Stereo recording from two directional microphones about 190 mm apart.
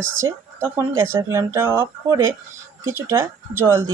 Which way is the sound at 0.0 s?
90° right.